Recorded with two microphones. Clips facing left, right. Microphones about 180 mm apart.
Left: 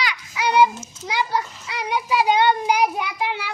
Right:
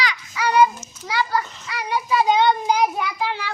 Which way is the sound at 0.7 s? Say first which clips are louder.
Even; 25° left (ahead or behind).